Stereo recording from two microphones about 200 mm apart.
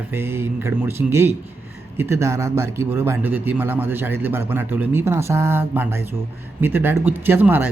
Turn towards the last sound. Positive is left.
turn(degrees=-10)  # may be behind; listen again after turning